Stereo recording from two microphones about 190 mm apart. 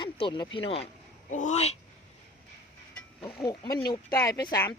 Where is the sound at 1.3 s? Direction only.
40° left (ahead or behind).